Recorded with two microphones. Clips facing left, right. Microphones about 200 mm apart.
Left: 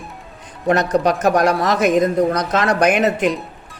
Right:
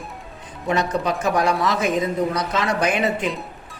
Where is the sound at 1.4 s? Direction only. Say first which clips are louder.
Left 4 dB; 75° left (ahead or behind).